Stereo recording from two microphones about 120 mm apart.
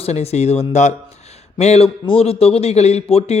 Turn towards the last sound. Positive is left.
turn(degrees=55)  # may be behind; listen again after turning